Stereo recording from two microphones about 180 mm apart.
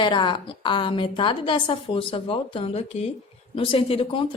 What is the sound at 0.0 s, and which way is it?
A woman's voice, 25° left (ahead or behind).